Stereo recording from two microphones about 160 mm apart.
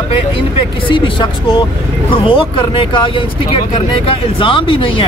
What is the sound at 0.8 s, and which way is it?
Speech, 30° left (ahead or behind).